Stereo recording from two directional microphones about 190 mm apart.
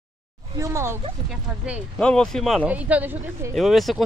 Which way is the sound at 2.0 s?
5° left (ahead or behind).